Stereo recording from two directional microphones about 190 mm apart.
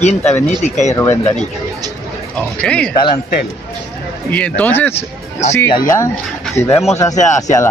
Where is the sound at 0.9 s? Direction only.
15° left (ahead or behind).